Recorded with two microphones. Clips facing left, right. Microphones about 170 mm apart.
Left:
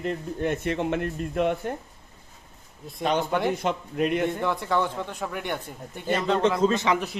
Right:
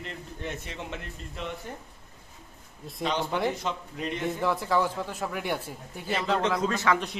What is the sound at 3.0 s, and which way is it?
Speech, 50° left (ahead or behind).